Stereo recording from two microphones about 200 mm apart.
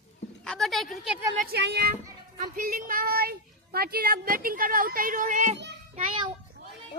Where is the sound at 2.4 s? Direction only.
45° right (ahead or behind).